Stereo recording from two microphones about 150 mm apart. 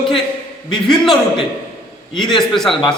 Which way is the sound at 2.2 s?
30° left (ahead or behind).